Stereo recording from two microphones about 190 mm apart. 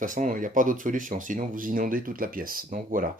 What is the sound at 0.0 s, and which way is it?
Speech, 45° right (ahead or behind).